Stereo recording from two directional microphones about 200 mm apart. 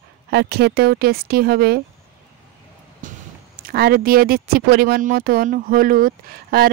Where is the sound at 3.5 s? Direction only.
50° right (ahead or behind).